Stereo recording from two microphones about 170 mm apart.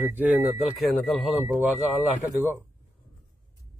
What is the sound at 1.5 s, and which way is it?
Speech, 10° right (ahead or behind).